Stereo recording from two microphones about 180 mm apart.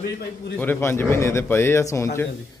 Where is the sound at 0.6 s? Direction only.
10° left (ahead or behind).